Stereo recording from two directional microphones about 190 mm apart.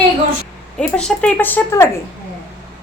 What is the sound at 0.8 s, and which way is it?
A woman's voice, 5° left (ahead or behind).